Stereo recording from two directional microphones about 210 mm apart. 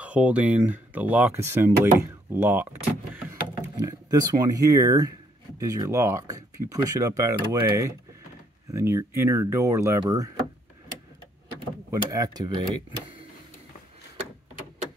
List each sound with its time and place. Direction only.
0.0 s speech: 5° right (ahead or behind)
11.9 s speech: 15° right (ahead or behind)